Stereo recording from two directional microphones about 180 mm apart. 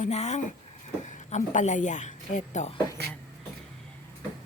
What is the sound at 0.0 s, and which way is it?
A woman's voice, 40° left (ahead or behind).